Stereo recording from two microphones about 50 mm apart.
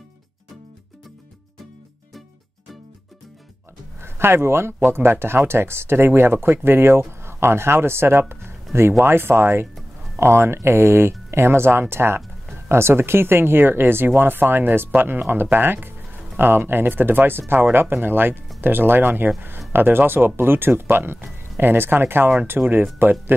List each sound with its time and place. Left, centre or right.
4.0 s speech: right
10.1 s speech: right